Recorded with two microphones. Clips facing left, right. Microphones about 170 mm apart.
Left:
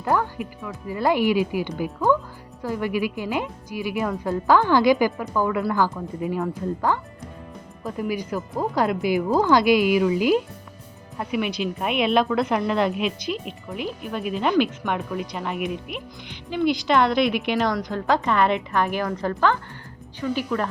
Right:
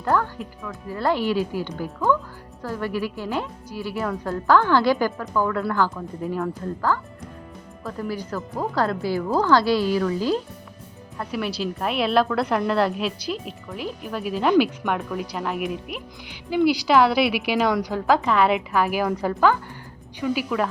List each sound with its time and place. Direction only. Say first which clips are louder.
0.0 s speech: even; 10° left (ahead or behind)
11.8 s a woman's voice: even; centre (ahead or behind)